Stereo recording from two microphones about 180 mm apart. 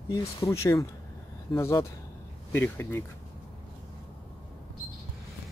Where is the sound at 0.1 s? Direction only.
15° left (ahead or behind).